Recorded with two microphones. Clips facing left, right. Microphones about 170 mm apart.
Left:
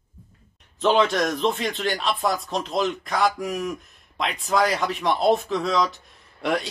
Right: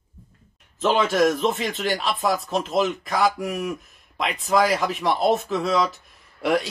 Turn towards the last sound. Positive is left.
turn(degrees=0)  # may be behind; listen again after turning